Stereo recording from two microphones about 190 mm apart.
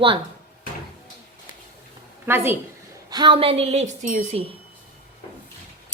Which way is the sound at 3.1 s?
25° right (ahead or behind).